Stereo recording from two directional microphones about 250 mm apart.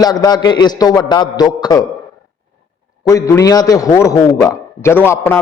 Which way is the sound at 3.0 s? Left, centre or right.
Centre.